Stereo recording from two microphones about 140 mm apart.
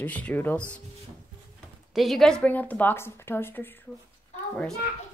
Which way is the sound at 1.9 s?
Centre (ahead or behind).